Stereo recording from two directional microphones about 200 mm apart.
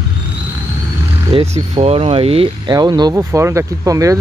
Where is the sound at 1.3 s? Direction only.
30° right (ahead or behind).